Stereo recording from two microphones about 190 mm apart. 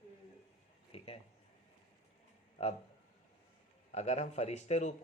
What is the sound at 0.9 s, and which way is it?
Speech, 30° left (ahead or behind).